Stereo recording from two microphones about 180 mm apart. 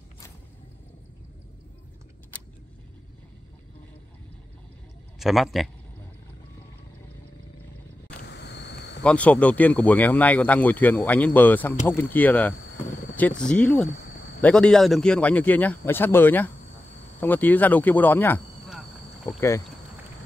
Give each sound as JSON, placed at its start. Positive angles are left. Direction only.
{"t": 5.2, "sound": "speech", "side_deg": 0}
{"t": 8.2, "sound": "insect", "side_deg": 70}
{"t": 9.0, "sound": "speech", "side_deg": 5}